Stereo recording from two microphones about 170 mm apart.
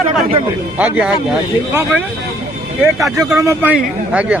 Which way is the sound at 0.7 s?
5° right (ahead or behind).